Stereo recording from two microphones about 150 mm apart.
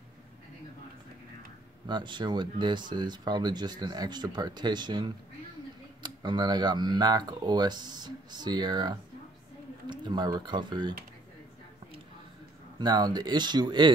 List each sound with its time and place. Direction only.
1.9 s speech: 30° right (ahead or behind)
12.7 s speech: 30° right (ahead or behind)